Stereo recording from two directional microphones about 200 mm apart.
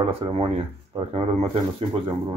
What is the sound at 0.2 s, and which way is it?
Speech, 30° right (ahead or behind).